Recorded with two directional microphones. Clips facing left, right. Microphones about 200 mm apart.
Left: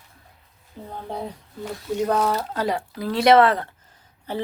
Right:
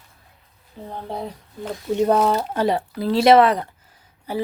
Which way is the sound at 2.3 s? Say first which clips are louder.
Right 4 dB; 20° right (ahead or behind).